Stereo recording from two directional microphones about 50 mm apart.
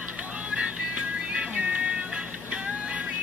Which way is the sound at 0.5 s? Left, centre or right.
Centre.